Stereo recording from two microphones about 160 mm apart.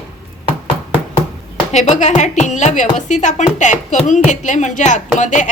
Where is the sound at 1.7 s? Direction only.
45° left (ahead or behind).